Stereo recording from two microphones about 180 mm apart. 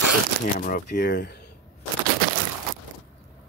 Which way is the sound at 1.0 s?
70° left (ahead or behind).